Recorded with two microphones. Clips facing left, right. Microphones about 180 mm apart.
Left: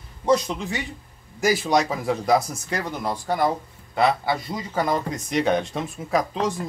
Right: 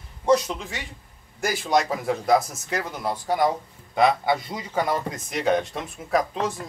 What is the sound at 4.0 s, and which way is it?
Speech, 20° right (ahead or behind).